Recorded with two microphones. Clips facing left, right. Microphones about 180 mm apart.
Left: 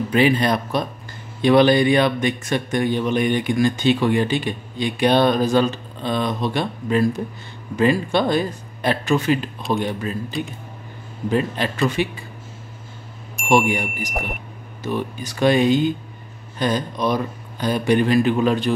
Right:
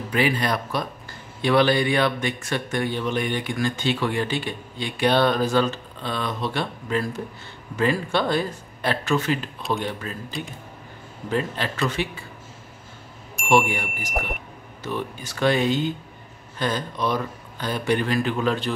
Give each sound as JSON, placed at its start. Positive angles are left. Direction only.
{"t": 0.1, "sound": "a man's voice", "side_deg": 20}
{"t": 10.3, "sound": "speech", "side_deg": 0}
{"t": 11.2, "sound": "a man's voice", "side_deg": 15}
{"t": 13.5, "sound": "a man's voice", "side_deg": 15}